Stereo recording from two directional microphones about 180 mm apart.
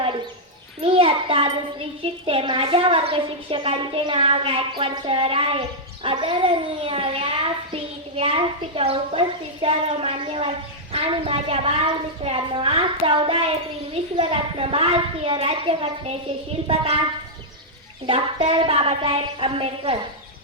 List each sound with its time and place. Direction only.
0.8 s a child's voice: 30° right (ahead or behind)
18.0 s a child's voice: 30° right (ahead or behind)